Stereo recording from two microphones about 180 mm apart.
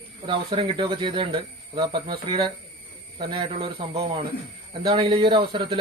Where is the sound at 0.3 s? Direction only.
30° right (ahead or behind).